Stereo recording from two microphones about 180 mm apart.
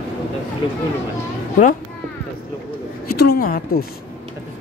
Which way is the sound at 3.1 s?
55° left (ahead or behind).